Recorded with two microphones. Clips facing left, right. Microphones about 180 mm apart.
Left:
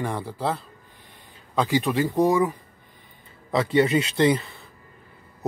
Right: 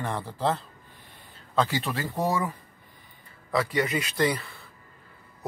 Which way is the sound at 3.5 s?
25° left (ahead or behind).